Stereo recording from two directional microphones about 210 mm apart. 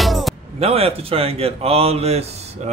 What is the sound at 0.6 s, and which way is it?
Speech, 30° right (ahead or behind).